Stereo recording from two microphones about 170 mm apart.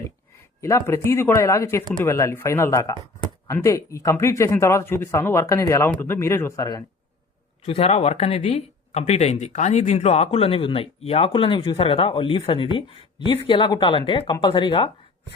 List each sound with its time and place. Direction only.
0.6 s speech: 20° left (ahead or behind)
7.6 s speech: 40° left (ahead or behind)